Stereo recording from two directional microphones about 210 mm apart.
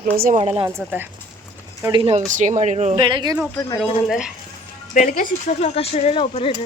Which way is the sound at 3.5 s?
10° left (ahead or behind).